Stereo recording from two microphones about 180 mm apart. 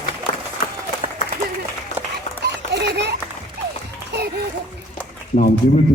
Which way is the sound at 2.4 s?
70° right (ahead or behind).